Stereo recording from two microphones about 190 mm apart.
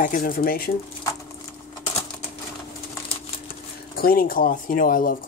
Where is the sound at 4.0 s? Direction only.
50° left (ahead or behind).